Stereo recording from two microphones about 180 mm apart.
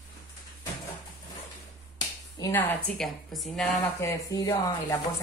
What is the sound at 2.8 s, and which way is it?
Speech, centre (ahead or behind).